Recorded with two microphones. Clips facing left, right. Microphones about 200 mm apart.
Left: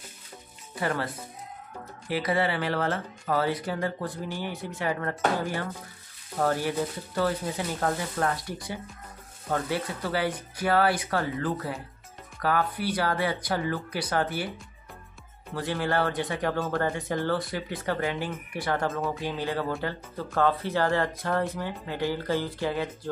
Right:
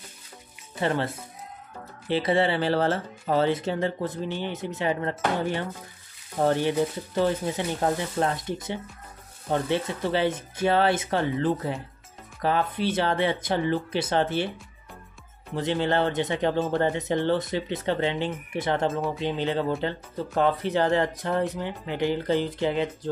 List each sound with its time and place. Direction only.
0.7 s speech: 25° right (ahead or behind)
15.5 s speech: 20° right (ahead or behind)